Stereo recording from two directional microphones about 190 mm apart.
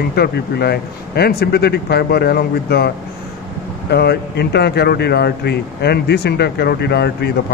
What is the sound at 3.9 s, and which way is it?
Speech, 60° left (ahead or behind).